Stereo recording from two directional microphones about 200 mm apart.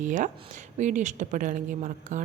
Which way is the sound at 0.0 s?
40° right (ahead or behind).